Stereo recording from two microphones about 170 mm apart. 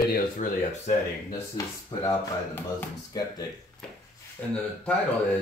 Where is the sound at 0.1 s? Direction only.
50° left (ahead or behind).